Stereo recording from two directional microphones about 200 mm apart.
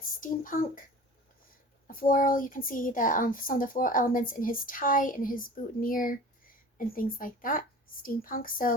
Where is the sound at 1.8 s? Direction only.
45° left (ahead or behind).